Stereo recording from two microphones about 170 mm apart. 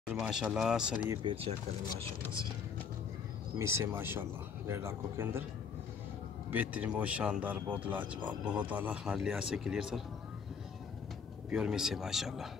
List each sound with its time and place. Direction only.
0.1 s speech: centre (ahead or behind)
1.1 s speech: 30° right (ahead or behind)
3.5 s speech: 15° right (ahead or behind)
6.5 s speech: 10° right (ahead or behind)
11.5 s speech: 5° right (ahead or behind)